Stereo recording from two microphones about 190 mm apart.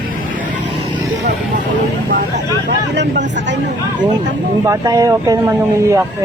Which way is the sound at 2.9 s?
65° right (ahead or behind).